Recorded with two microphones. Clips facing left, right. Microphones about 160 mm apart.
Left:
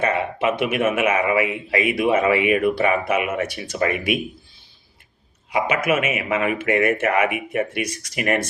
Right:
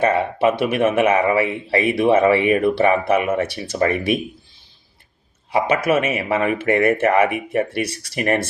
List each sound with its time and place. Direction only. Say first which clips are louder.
0.0 s speech: right 4 dB; 35° right (ahead or behind)
5.5 s speech: right 3 dB; 35° right (ahead or behind)